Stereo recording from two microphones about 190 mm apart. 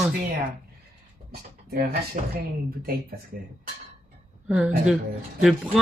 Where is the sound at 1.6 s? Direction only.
55° right (ahead or behind).